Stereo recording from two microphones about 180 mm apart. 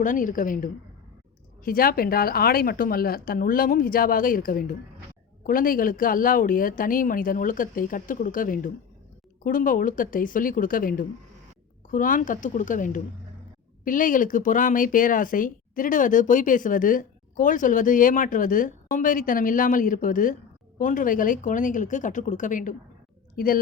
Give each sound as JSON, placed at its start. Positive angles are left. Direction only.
{"t": 0.0, "sound": "speech", "side_deg": 45}